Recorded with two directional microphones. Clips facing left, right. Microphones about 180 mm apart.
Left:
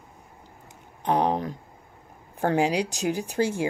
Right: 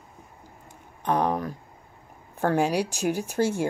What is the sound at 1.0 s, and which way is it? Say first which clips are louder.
Speech: left 1 dB; 20° left (ahead or behind).